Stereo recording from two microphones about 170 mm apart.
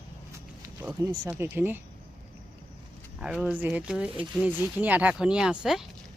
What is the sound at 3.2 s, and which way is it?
Speech, 5° right (ahead or behind).